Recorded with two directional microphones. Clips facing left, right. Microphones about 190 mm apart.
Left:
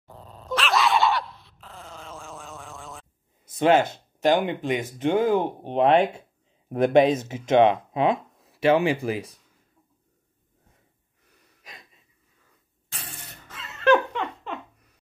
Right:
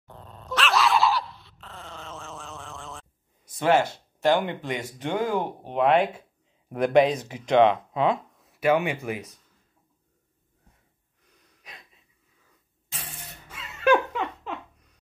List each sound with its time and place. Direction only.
0.0 s dog: centre (ahead or behind)
3.5 s speech: 20° left (ahead or behind)
13.5 s laughter: 10° right (ahead or behind)